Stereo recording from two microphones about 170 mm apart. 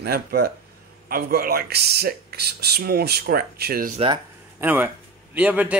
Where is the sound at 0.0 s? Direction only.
65° right (ahead or behind).